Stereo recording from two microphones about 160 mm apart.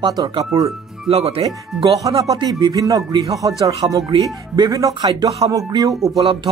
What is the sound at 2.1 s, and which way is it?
Speech, 30° right (ahead or behind).